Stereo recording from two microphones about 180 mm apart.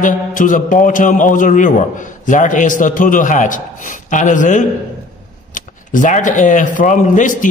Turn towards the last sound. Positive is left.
turn(degrees=45)  # may be behind; listen again after turning